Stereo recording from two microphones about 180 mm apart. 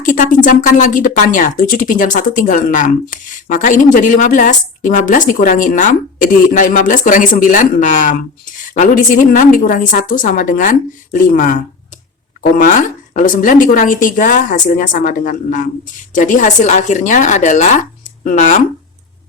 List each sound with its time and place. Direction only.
0.0 s speech: 45° left (ahead or behind)